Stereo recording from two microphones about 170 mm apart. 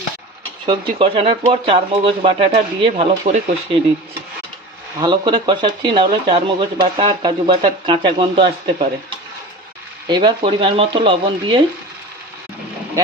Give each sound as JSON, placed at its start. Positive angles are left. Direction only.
{"t": 0.6, "sound": "speech", "side_deg": -30}
{"t": 4.9, "sound": "speech", "side_deg": -25}
{"t": 10.1, "sound": "speech", "side_deg": -25}